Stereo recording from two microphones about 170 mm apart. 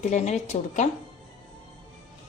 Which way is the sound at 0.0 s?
40° left (ahead or behind).